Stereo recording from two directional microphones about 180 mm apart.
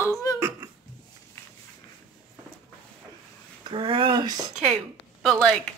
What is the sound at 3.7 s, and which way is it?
Speech, 30° right (ahead or behind).